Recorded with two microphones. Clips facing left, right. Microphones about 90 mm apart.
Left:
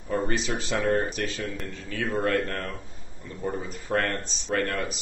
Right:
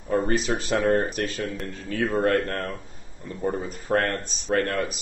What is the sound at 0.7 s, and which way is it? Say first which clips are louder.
Speech: right 3 dB; 50° right (ahead or behind).